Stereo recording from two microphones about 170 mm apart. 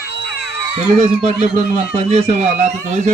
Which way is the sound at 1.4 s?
40° right (ahead or behind).